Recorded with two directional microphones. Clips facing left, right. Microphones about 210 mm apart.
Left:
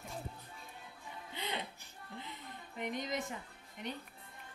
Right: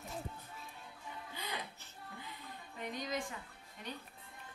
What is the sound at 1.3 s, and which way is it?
Speech, 25° left (ahead or behind).